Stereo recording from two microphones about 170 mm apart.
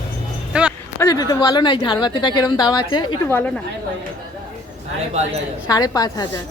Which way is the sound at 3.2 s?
10° left (ahead or behind).